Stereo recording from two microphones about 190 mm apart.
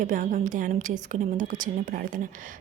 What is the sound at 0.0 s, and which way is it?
A woman's voice, 45° right (ahead or behind).